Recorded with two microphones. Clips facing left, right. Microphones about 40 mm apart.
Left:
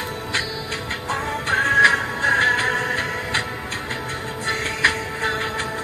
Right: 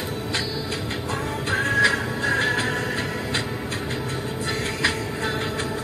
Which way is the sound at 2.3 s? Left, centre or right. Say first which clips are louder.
Left 5 dB; left.